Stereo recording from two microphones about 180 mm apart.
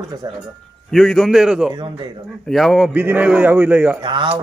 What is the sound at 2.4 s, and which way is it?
A man's voice, centre (ahead or behind).